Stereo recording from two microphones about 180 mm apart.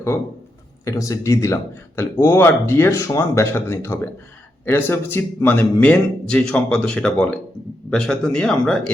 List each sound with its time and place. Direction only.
0.9 s a man's voice: 20° left (ahead or behind)